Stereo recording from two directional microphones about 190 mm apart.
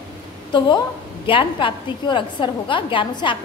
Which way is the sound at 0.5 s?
25° left (ahead or behind).